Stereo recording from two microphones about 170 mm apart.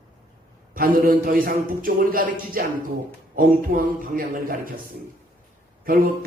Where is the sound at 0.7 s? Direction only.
55° right (ahead or behind).